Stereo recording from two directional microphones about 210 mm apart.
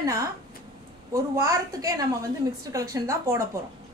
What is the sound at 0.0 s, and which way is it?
A woman's voice, 15° right (ahead or behind).